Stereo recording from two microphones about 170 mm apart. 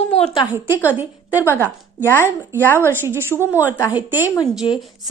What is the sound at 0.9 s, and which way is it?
Speech, 10° right (ahead or behind).